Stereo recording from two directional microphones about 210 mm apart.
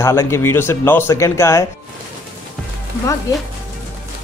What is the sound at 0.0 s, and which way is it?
Speech, 15° left (ahead or behind).